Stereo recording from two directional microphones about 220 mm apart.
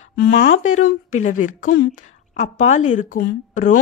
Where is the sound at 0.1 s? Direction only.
50° left (ahead or behind).